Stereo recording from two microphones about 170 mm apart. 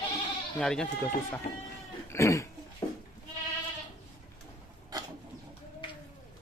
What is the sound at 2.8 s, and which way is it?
Goat, 20° left (ahead or behind).